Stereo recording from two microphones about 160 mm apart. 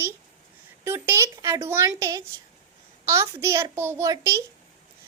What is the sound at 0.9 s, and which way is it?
Speech, 15° right (ahead or behind).